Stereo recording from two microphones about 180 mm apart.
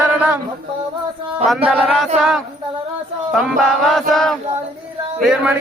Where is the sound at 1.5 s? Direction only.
5° right (ahead or behind).